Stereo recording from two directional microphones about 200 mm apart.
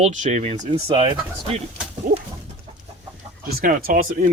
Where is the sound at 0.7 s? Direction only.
25° right (ahead or behind).